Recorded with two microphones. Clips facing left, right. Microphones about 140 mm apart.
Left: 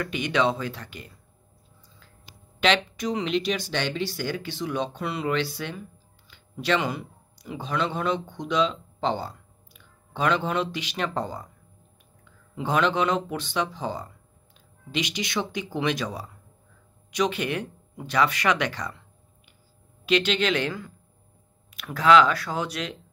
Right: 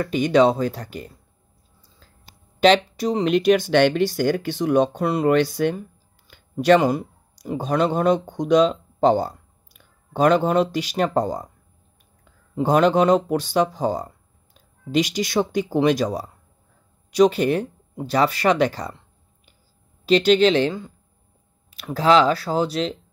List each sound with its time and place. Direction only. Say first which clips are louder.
0.0 s speech: right 8 dB; 40° right (ahead or behind)
2.6 s speech: right 7 dB; 35° right (ahead or behind)
3.3 s speech: right 9 dB; 50° right (ahead or behind); by 18.9 s 35° right (ahead or behind)
20.1 s speech: right 8 dB; 35° right (ahead or behind)